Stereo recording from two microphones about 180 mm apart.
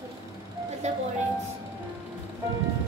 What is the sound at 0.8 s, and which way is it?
Speech, 40° right (ahead or behind).